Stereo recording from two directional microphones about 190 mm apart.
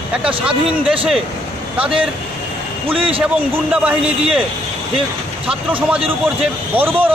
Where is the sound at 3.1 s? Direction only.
5° right (ahead or behind).